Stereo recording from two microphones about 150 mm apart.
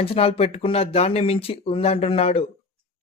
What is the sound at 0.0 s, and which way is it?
Speech, 40° left (ahead or behind).